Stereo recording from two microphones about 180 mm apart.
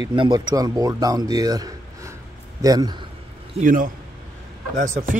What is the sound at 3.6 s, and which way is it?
A man's voice, 50° right (ahead or behind).